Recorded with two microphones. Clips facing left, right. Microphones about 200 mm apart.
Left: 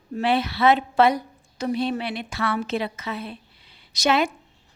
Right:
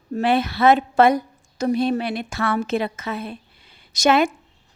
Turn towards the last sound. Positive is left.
turn(degrees=-50)  # may be behind; listen again after turning